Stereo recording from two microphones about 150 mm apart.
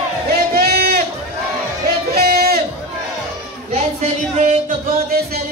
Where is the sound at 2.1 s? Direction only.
90° right.